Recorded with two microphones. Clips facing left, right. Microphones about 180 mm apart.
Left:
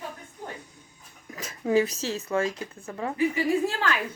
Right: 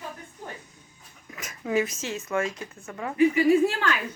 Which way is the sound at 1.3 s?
30° left (ahead or behind).